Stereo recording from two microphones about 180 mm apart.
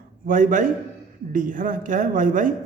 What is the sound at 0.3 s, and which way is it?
A man's voice, 45° right (ahead or behind).